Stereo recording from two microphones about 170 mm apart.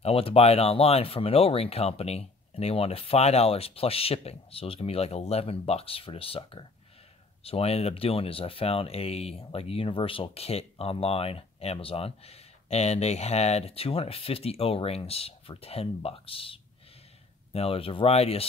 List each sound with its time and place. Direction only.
0.0 s speech: 35° left (ahead or behind)